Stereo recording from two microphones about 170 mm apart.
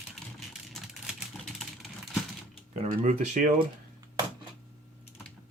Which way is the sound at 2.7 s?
45° right (ahead or behind).